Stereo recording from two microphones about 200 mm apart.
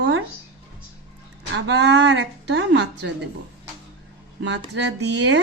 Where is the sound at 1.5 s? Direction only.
60° right (ahead or behind).